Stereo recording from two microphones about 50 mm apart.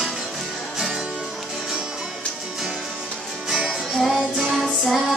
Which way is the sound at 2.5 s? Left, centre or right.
Centre.